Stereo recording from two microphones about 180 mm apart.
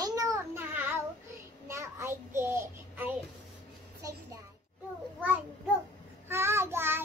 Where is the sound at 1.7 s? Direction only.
15° right (ahead or behind).